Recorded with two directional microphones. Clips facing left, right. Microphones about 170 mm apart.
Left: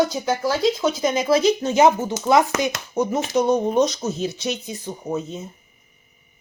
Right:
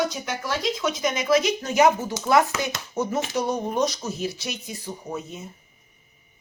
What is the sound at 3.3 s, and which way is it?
Speech, 20° left (ahead or behind).